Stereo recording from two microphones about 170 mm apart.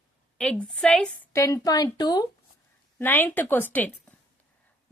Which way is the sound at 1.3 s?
20° left (ahead or behind).